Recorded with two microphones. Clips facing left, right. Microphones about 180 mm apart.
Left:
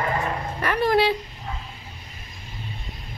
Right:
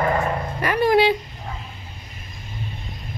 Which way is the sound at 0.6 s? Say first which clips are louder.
Right 3 dB; centre (ahead or behind).